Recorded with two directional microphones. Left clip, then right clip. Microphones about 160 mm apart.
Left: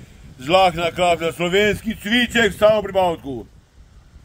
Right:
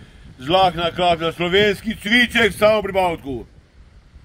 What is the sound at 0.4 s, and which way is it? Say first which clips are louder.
A man's voice: left 1 dB; 25° left (ahead or behind).